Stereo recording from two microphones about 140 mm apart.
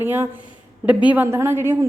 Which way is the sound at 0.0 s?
15° right (ahead or behind).